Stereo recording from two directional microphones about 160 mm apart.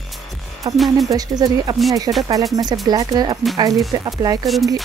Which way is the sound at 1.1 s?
25° right (ahead or behind).